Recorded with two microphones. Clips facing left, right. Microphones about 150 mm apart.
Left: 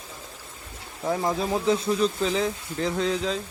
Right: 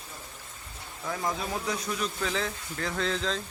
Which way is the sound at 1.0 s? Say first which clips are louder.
Left 7 dB; 30° left (ahead or behind).